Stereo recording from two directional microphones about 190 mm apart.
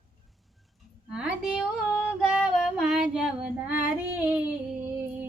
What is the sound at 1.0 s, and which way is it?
Female singing, 5° right (ahead or behind).